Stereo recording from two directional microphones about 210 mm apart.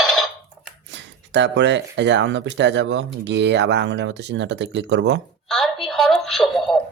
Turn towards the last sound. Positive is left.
turn(degrees=0)  # may be behind; listen again after turning